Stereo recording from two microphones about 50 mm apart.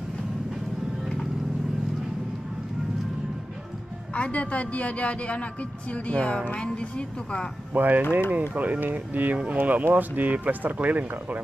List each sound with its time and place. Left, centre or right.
4.1 s speech: left
7.7 s speech: right